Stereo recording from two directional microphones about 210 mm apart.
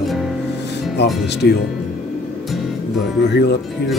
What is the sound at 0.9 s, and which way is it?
Speech, 55° left (ahead or behind).